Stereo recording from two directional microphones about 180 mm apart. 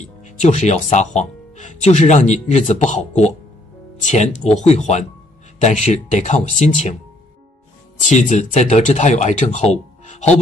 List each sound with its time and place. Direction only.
0.2 s speech: 40° left (ahead or behind)
8.0 s speech: 45° left (ahead or behind)